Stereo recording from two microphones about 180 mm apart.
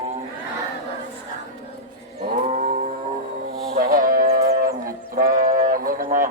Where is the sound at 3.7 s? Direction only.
50° right (ahead or behind).